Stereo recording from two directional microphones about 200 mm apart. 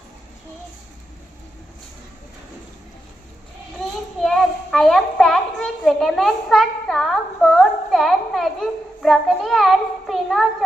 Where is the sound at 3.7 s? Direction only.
Centre (ahead or behind).